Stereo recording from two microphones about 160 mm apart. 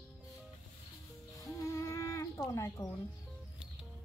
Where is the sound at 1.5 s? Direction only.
20° left (ahead or behind).